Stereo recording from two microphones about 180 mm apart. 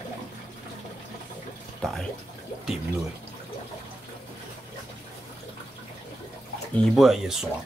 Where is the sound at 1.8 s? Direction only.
Centre (ahead or behind).